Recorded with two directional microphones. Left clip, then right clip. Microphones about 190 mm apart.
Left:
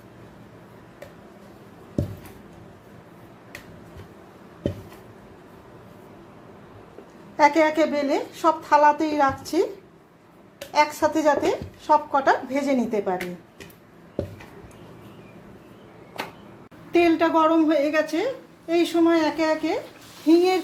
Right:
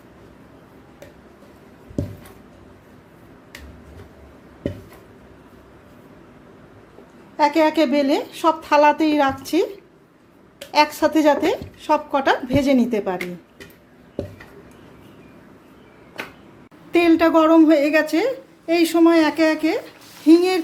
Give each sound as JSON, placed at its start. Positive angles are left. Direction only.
{"t": 7.5, "sound": "a woman's voice", "side_deg": -25}
{"t": 10.7, "sound": "a woman's voice", "side_deg": -25}
{"t": 16.9, "sound": "a woman's voice", "side_deg": -25}